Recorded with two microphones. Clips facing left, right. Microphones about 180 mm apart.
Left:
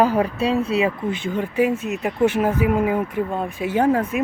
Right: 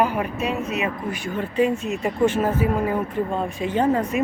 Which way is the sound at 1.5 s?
5° left (ahead or behind).